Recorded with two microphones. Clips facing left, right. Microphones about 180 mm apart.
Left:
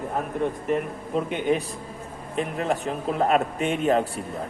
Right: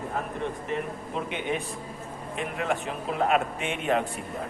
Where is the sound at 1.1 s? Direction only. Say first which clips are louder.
Left 8 dB; 40° left (ahead or behind).